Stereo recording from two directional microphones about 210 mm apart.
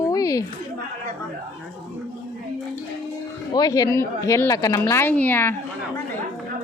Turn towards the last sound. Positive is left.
turn(degrees=10)  # may be behind; listen again after turning